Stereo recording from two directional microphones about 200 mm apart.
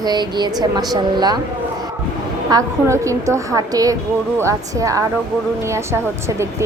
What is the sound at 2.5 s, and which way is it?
A woman's voice, 15° right (ahead or behind).